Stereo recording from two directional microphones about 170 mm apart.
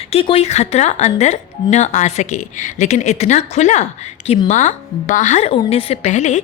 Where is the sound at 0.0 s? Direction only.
35° left (ahead or behind).